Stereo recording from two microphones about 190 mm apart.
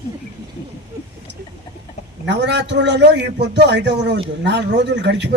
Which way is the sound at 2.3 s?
65° right (ahead or behind).